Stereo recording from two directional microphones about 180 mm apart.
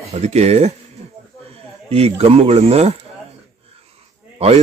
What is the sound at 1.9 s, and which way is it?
Speech, 35° right (ahead or behind).